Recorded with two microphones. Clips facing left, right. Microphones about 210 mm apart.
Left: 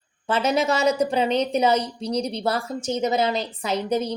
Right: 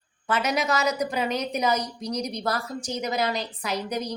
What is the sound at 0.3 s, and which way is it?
A woman's voice, 30° left (ahead or behind).